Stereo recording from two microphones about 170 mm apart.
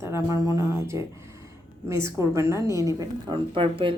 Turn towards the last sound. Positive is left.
turn(degrees=-30)  # may be behind; listen again after turning